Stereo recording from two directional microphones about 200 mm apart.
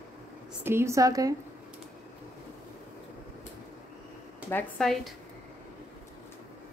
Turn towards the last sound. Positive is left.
turn(degrees=0)  # may be behind; listen again after turning